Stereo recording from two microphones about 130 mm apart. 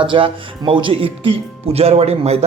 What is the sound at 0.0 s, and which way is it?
Speech, 40° right (ahead or behind).